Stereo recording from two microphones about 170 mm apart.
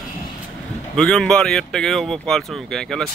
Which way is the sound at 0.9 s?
5° left (ahead or behind).